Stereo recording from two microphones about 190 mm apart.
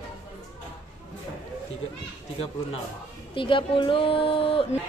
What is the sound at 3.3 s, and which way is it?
A woman's voice, 25° left (ahead or behind).